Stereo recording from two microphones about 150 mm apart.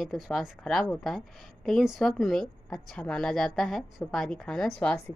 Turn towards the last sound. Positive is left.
turn(degrees=10)  # may be behind; listen again after turning